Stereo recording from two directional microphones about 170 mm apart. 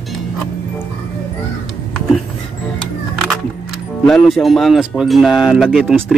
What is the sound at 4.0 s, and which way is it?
Speech, centre (ahead or behind).